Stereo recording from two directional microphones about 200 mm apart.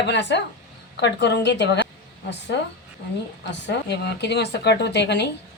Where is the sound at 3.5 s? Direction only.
55° left (ahead or behind).